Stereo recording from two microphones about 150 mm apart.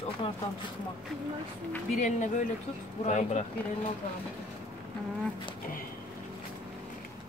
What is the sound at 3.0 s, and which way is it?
Speech, 50° left (ahead or behind).